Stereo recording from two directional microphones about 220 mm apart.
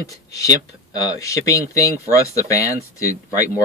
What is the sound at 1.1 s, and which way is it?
Speech, 15° left (ahead or behind).